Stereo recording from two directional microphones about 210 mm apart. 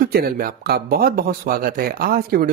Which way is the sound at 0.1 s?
45° right (ahead or behind).